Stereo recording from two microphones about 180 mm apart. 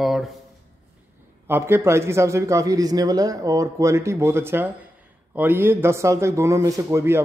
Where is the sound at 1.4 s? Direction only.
15° right (ahead or behind).